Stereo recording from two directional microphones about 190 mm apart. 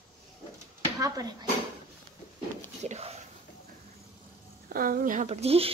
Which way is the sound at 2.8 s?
35° right (ahead or behind).